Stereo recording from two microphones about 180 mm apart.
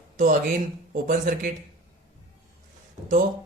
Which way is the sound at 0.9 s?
50° right (ahead or behind).